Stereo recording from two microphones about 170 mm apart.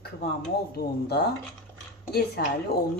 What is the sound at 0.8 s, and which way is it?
Speech, 70° left (ahead or behind).